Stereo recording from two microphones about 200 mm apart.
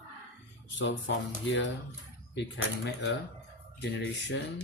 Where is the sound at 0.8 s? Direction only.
65° left (ahead or behind).